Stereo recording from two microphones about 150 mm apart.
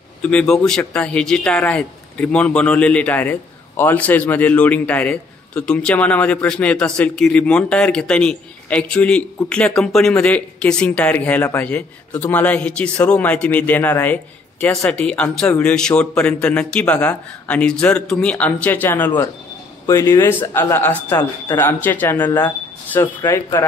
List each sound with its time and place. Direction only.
0.2 s speech: 5° left (ahead or behind)